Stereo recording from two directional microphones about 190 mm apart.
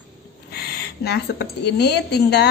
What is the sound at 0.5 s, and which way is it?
A woman's voice, 55° left (ahead or behind).